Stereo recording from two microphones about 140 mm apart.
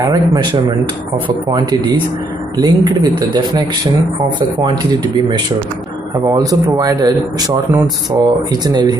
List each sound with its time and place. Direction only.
0.0 s speech: 25° right (ahead or behind)
2.5 s speech: 30° right (ahead or behind)
6.1 s speech: 25° right (ahead or behind)